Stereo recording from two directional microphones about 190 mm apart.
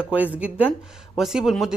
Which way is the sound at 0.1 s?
5° right (ahead or behind).